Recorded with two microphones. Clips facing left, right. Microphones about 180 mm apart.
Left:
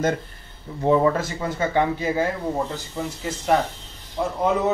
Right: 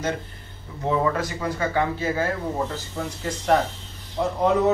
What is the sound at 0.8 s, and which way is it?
A man's voice, 25° left (ahead or behind).